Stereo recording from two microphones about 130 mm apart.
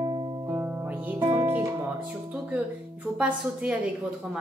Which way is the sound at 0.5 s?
15° right (ahead or behind).